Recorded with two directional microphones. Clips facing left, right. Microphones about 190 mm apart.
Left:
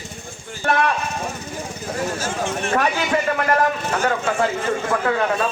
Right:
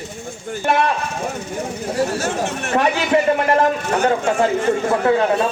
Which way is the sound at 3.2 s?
25° right (ahead or behind).